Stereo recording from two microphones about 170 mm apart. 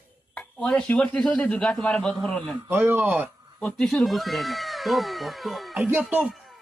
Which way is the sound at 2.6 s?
10° right (ahead or behind).